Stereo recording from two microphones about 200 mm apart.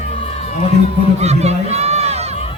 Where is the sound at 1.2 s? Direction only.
35° right (ahead or behind).